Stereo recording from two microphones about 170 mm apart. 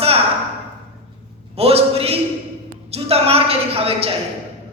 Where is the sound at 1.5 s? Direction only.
35° right (ahead or behind).